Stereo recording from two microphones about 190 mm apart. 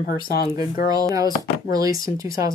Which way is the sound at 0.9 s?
20° right (ahead or behind).